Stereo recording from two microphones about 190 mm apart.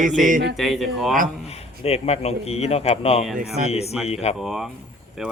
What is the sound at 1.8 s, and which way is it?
Speech, 35° left (ahead or behind).